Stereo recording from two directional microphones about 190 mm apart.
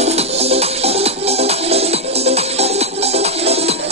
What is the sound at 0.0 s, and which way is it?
Music, 35° right (ahead or behind).